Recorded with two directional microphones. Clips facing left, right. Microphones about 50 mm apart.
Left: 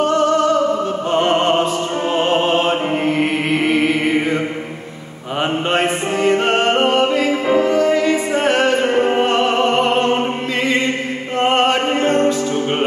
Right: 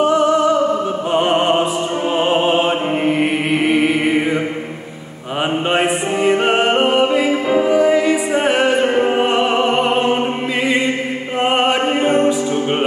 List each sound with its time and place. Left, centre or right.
0.0 s opera: centre
2.1 s music: centre
3.2 s chant: centre
5.4 s music: centre
11.3 s music: centre